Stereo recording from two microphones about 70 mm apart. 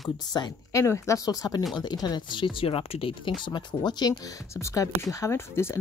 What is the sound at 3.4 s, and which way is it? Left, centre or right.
Speech, left.